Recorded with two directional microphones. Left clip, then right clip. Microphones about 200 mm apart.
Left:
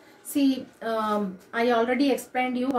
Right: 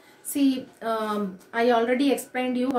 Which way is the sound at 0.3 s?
15° right (ahead or behind).